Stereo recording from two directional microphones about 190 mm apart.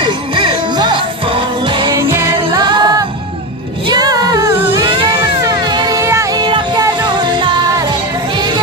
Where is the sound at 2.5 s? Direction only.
20° right (ahead or behind).